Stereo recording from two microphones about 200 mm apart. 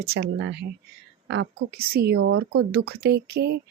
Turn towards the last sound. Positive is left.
turn(degrees=-55)  # may be behind; listen again after turning